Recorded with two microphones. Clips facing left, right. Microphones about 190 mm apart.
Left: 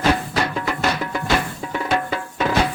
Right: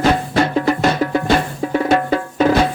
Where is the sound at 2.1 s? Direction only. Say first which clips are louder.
Right 8 dB; 40° right (ahead or behind).